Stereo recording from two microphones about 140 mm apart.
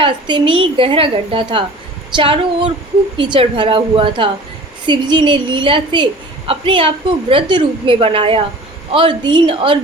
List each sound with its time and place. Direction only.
0.0 s a woman's voice: 35° right (ahead or behind)